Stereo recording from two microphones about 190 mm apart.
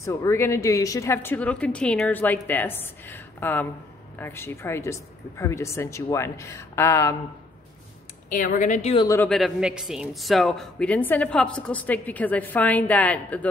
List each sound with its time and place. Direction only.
0.0 s speech: 15° left (ahead or behind)
8.3 s speech: 45° left (ahead or behind)
8.9 s speech: 15° left (ahead or behind)
9.3 s speech: centre (ahead or behind)